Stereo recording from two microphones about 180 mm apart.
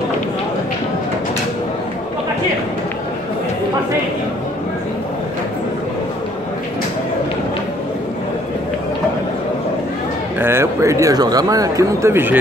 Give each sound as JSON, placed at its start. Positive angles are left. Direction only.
{"t": 10.4, "sound": "a man's voice", "side_deg": -15}